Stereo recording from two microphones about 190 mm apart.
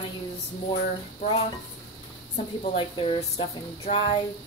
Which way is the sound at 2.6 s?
30° left (ahead or behind).